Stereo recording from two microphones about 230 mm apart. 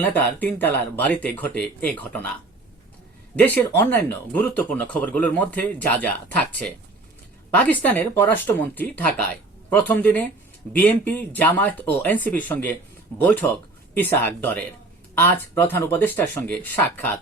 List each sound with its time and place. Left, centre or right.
0.0 s speech: centre
3.4 s speech: centre